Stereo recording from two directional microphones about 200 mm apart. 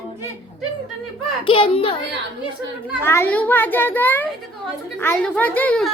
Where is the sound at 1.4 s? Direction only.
25° left (ahead or behind).